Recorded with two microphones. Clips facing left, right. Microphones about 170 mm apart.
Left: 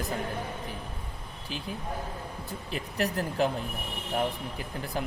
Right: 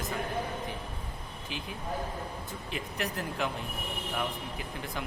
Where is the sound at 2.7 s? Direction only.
40° left (ahead or behind).